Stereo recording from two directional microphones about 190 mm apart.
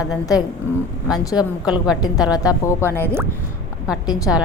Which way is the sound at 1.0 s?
20° left (ahead or behind).